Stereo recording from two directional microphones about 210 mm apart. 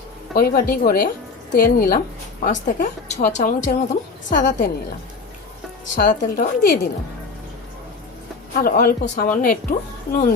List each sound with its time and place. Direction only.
0.3 s a woman's voice: 45° left (ahead or behind)
6.0 s speech: 40° left (ahead or behind)
8.5 s speech: 45° left (ahead or behind)